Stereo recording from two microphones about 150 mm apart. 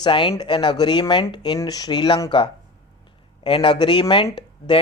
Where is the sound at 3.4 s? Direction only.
35° left (ahead or behind).